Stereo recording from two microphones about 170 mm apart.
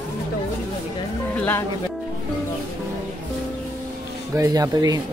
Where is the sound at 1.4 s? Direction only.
10° left (ahead or behind).